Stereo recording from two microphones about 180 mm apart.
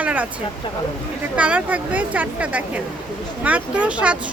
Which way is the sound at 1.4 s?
5° right (ahead or behind).